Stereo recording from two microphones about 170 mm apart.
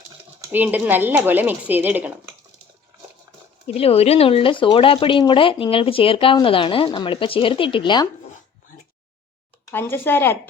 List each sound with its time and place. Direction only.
0.5 s speech: 10° right (ahead or behind)
3.7 s speech: 35° left (ahead or behind)
9.7 s speech: 15° left (ahead or behind)